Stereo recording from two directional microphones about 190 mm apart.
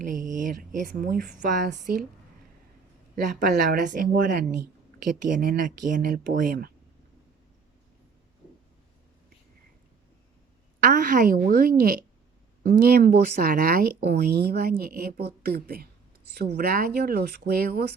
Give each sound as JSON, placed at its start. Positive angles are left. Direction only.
{"t": 0.0, "sound": "a woman's voice", "side_deg": -45}
{"t": 3.4, "sound": "speech", "side_deg": -50}
{"t": 10.8, "sound": "speech", "side_deg": -45}